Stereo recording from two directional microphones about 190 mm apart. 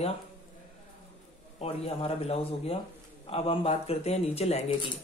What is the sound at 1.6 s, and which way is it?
Speech, 30° left (ahead or behind).